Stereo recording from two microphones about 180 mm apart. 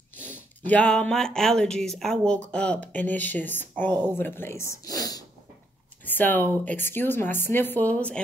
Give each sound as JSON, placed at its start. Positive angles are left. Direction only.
{"t": 0.2, "sound": "a woman's voice", "side_deg": 10}